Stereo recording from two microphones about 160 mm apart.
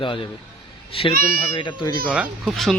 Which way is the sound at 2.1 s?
5° right (ahead or behind).